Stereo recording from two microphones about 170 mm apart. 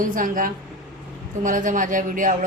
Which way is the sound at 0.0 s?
50° right (ahead or behind).